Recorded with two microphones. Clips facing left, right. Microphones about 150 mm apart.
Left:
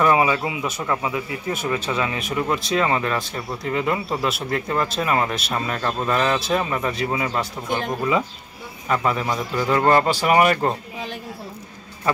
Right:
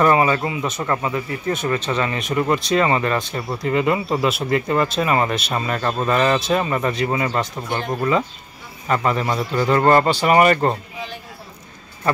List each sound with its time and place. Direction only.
0.0 s speech: 5° left (ahead or behind)